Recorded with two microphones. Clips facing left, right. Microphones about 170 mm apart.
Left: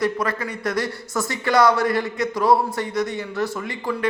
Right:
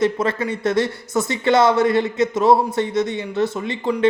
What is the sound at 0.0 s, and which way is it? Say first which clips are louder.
Speech: right 4 dB; 25° right (ahead or behind).